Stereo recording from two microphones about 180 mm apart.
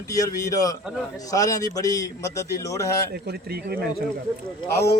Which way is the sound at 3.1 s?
60° right (ahead or behind).